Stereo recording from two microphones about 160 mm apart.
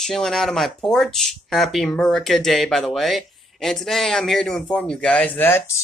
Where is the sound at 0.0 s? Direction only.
5° left (ahead or behind).